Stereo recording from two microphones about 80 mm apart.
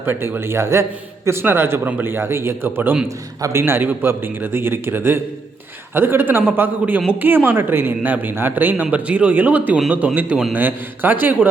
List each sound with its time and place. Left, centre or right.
0.0 s a man's voice: right